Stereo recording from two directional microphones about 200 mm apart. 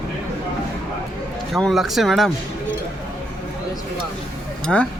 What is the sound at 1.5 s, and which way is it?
Speech, centre (ahead or behind).